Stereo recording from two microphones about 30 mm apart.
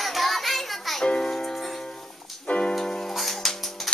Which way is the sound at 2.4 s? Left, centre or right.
Left.